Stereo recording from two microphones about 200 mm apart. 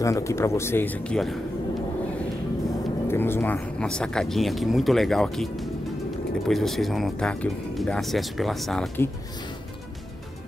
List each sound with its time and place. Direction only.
0.0 s speech: 15° left (ahead or behind)
3.1 s speech: 10° left (ahead or behind)